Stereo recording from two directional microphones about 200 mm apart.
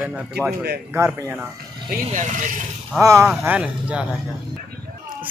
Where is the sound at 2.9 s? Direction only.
15° right (ahead or behind).